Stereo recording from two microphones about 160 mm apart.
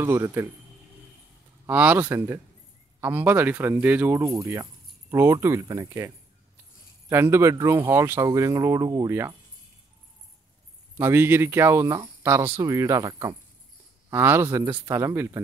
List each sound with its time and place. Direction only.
0.0 s speech: 15° right (ahead or behind)
1.7 s speech: 10° right (ahead or behind)
4.2 s speech: 20° right (ahead or behind)
11.0 s speech: 15° right (ahead or behind)